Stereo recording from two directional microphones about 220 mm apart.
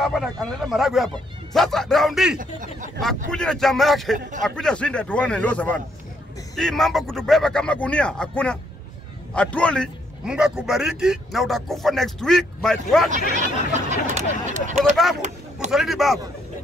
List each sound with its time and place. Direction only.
0.0 s a man's voice: centre (ahead or behind)
2.3 s speech: 35° right (ahead or behind)
3.3 s a man's voice: 5° left (ahead or behind)
13.4 s speech: 30° right (ahead or behind)
15.7 s a man's voice: centre (ahead or behind)